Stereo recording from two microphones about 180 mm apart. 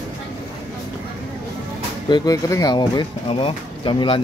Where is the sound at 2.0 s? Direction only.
25° left (ahead or behind).